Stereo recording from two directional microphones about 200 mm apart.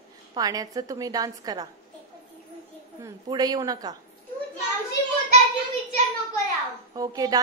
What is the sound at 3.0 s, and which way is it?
A woman's voice, 15° right (ahead or behind).